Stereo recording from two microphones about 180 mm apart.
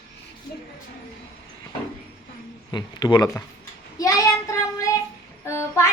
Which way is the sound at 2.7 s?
25° left (ahead or behind).